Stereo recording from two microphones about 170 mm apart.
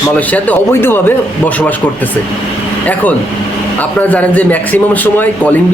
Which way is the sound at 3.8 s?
10° left (ahead or behind).